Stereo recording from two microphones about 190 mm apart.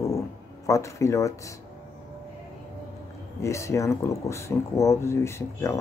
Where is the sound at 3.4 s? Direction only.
15° left (ahead or behind).